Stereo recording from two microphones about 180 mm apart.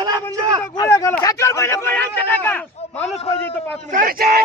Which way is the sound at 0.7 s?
20° left (ahead or behind).